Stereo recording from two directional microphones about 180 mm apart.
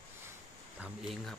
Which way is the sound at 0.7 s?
5° right (ahead or behind).